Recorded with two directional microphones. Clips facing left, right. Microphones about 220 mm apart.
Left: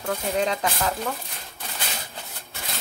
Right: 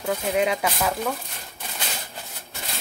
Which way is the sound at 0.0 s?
10° right (ahead or behind).